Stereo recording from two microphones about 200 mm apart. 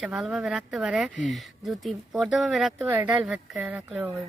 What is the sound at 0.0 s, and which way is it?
Speech, 5° right (ahead or behind).